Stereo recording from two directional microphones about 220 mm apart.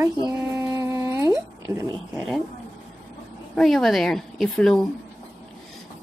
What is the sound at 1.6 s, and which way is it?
Speech, 15° right (ahead or behind).